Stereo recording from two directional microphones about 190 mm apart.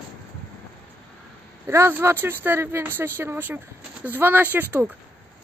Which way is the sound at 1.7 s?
10° right (ahead or behind).